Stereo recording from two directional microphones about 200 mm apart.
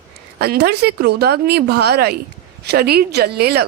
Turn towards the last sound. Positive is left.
turn(degrees=-55)  # may be behind; listen again after turning